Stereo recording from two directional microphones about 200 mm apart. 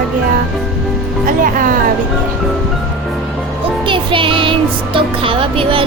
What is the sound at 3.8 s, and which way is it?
Music, 25° right (ahead or behind).